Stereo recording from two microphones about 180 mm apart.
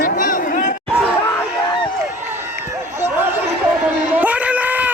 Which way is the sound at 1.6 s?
25° left (ahead or behind).